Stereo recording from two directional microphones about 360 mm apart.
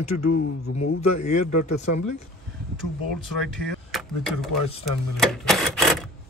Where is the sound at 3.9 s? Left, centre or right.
Centre.